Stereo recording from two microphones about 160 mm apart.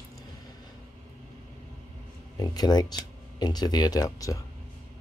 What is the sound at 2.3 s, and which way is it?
Speech, 25° left (ahead or behind).